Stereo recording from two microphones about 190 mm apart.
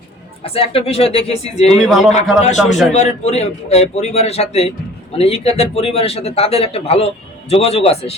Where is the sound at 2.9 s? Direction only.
35° left (ahead or behind).